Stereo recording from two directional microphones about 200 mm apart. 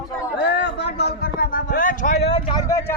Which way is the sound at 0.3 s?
60° left (ahead or behind).